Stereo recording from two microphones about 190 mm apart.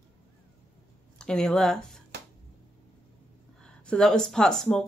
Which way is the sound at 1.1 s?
5° left (ahead or behind).